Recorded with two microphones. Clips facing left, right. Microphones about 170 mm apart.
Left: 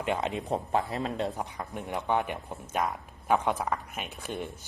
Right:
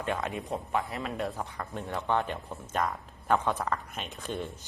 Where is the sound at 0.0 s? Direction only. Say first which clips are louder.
Left 2 dB; 20° left (ahead or behind).